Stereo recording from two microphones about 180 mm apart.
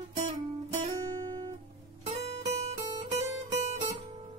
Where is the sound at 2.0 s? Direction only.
40° right (ahead or behind).